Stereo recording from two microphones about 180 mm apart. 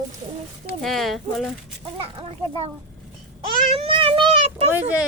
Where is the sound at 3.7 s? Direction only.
30° right (ahead or behind).